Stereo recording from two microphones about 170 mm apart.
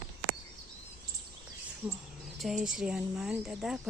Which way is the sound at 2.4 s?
Centre (ahead or behind).